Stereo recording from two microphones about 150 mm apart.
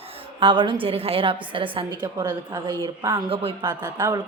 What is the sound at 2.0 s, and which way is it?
Speech, 20° right (ahead or behind).